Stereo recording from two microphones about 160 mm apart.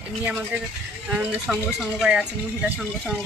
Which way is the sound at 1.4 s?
5° right (ahead or behind).